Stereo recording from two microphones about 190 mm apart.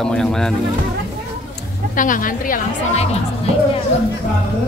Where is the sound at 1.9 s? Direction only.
45° left (ahead or behind).